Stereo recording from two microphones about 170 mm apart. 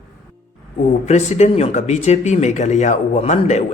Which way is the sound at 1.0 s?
40° left (ahead or behind).